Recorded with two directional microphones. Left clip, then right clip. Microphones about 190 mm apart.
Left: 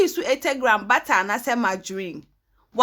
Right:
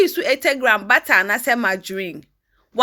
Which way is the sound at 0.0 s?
10° right (ahead or behind).